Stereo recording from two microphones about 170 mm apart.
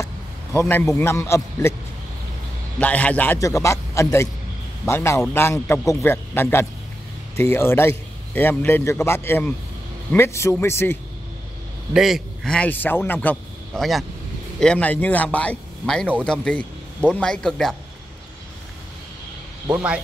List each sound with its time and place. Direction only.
0.6 s a man's voice: 15° left (ahead or behind)
2.8 s a man's voice: 10° left (ahead or behind)
11.9 s a man's voice: centre (ahead or behind)
19.7 s speech: 5° right (ahead or behind)